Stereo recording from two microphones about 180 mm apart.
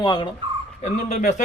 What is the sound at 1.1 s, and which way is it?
Speech, 50° left (ahead or behind).